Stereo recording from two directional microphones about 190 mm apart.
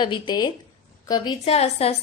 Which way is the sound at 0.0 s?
25° left (ahead or behind).